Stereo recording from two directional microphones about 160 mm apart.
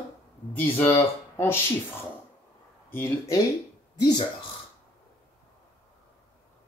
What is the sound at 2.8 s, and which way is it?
Speech, 20° left (ahead or behind).